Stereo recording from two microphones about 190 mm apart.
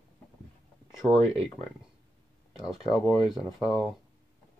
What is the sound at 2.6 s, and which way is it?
Speech, centre (ahead or behind).